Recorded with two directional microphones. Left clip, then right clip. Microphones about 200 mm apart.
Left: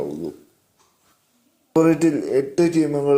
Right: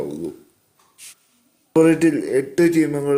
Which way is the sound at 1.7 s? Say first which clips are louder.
Right 2 dB; 5° right (ahead or behind).